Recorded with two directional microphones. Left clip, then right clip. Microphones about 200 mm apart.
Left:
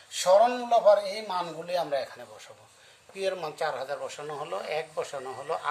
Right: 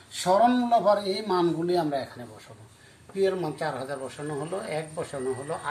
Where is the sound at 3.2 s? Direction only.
55° left (ahead or behind).